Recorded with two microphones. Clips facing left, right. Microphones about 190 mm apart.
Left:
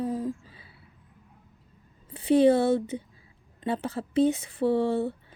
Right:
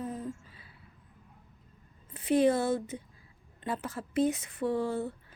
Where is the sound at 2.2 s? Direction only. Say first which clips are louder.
Left 5 dB; 30° left (ahead or behind).